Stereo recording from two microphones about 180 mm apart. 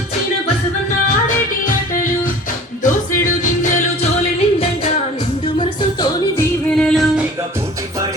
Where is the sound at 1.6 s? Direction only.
50° left (ahead or behind).